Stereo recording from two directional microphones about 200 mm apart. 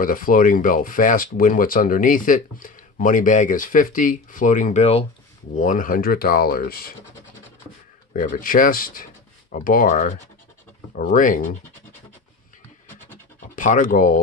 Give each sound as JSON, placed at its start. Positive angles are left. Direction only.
{"t": 0.0, "sound": "speech", "side_deg": 45}
{"t": 8.1, "sound": "speech", "side_deg": 45}
{"t": 13.6, "sound": "speech", "side_deg": 40}